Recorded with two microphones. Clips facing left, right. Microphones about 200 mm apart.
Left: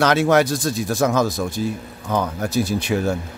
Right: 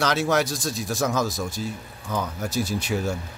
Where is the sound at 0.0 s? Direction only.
60° left (ahead or behind).